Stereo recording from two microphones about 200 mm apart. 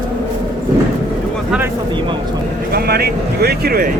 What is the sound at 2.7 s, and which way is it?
Speech, 50° right (ahead or behind).